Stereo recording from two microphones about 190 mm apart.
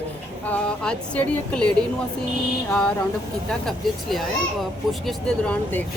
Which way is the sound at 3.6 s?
Centre (ahead or behind).